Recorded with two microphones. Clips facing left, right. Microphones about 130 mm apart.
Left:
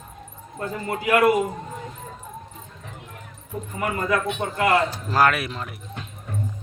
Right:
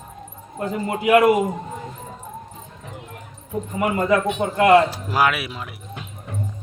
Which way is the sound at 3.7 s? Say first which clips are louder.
Right 5 dB; 20° right (ahead or behind).